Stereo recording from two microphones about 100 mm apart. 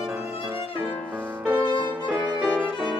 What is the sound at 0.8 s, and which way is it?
Music, 15° right (ahead or behind).